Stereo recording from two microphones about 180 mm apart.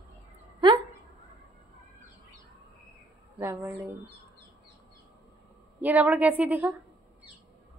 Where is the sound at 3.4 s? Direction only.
10° right (ahead or behind).